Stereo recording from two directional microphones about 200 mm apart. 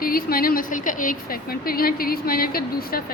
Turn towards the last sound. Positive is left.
turn(degrees=50)  # may be behind; listen again after turning